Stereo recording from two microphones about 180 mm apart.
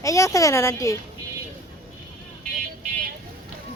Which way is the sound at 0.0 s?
15° left (ahead or behind).